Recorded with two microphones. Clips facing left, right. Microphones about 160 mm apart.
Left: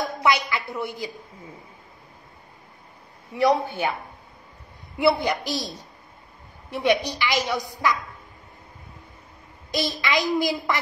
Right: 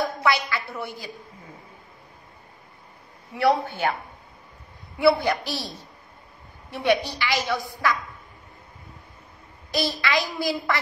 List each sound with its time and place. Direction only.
0.2 s a woman's voice: 20° left (ahead or behind)
3.3 s a woman's voice: 15° left (ahead or behind)
4.9 s a woman's voice: 20° left (ahead or behind)
6.7 s a woman's voice: 20° left (ahead or behind)
9.7 s a woman's voice: 20° left (ahead or behind)